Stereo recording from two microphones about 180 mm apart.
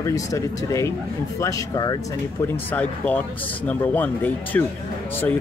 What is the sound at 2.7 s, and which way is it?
Speech, 10° left (ahead or behind).